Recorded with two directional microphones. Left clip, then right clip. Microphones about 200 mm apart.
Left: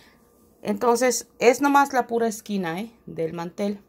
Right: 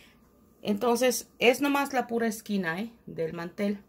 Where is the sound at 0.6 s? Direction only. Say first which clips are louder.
Left 4 dB; 15° left (ahead or behind).